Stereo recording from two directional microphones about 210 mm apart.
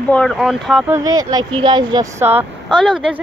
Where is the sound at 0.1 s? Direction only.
Centre (ahead or behind).